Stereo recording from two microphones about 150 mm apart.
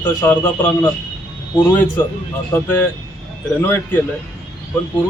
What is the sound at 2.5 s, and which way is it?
Speech, 15° left (ahead or behind).